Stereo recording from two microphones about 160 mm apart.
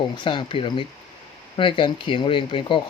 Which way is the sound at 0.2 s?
30° left (ahead or behind).